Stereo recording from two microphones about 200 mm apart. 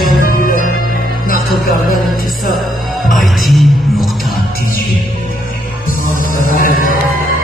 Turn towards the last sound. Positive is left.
turn(degrees=45)  # may be behind; listen again after turning